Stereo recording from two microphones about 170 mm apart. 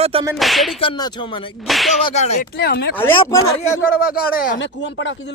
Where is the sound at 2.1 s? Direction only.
40° left (ahead or behind).